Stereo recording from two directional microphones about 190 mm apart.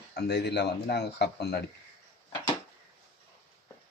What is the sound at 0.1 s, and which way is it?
Speech, 60° left (ahead or behind).